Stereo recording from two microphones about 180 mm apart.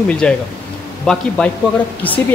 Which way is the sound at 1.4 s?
5° left (ahead or behind).